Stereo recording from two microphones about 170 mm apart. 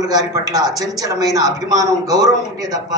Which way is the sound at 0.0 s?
20° right (ahead or behind).